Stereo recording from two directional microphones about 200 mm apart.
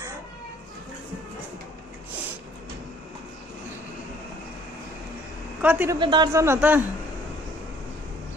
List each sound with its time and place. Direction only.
5.6 s a man's voice: 10° right (ahead or behind)
5.9 s a man's voice: 20° right (ahead or behind)